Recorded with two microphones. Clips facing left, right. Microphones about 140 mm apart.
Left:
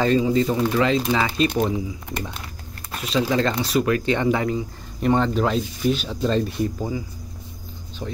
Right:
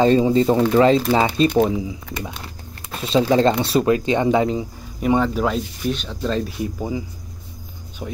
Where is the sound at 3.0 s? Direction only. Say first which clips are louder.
Right 5 dB; 25° right (ahead or behind).